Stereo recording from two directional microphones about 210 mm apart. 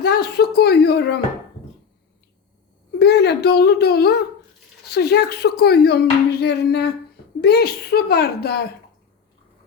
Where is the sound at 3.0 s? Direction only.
50° left (ahead or behind).